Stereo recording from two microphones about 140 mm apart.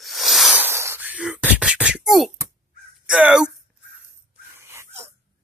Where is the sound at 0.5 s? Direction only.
15° right (ahead or behind); by 2.3 s centre (ahead or behind).